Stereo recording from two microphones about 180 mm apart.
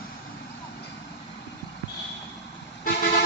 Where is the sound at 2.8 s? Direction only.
60° left (ahead or behind).